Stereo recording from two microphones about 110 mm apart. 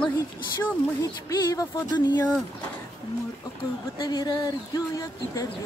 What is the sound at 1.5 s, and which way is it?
Speech, 40° left (ahead or behind).